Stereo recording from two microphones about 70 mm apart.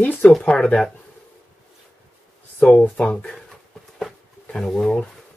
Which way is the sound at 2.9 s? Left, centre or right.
Left.